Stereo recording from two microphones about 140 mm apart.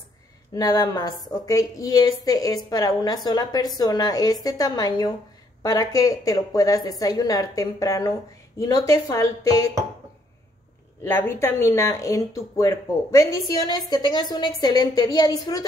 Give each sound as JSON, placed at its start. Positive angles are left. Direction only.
{"t": 0.6, "sound": "speech", "side_deg": 25}
{"t": 11.1, "sound": "speech", "side_deg": 15}